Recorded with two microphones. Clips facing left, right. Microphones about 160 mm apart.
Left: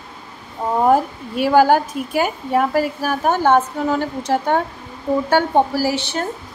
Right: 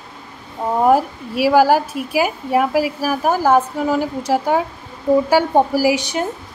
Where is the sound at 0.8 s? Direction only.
5° right (ahead or behind).